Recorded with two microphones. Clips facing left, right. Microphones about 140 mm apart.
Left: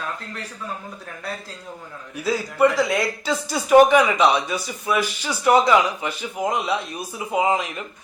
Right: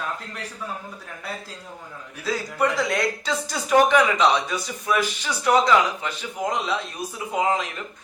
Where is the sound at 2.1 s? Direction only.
5° left (ahead or behind).